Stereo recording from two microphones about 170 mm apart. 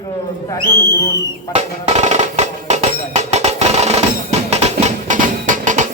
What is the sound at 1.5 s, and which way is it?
Music, 40° right (ahead or behind).